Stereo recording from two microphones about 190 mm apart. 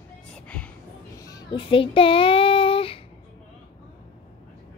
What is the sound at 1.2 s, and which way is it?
Child singing, 20° left (ahead or behind).